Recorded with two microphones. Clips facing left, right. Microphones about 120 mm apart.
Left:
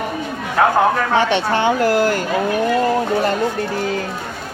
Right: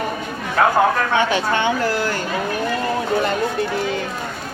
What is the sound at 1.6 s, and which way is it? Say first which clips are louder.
Speech: left 5 dB; 45° left (ahead or behind).